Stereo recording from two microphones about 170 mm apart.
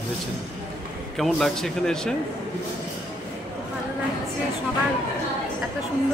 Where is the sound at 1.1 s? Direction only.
Centre (ahead or behind).